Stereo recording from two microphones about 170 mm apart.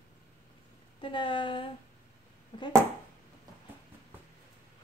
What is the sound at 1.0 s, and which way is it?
Speech, 30° left (ahead or behind).